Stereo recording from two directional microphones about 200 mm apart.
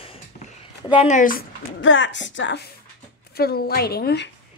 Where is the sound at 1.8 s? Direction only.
70° left (ahead or behind).